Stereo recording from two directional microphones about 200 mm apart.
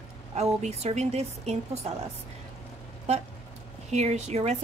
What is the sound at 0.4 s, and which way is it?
A woman's voice, 35° right (ahead or behind).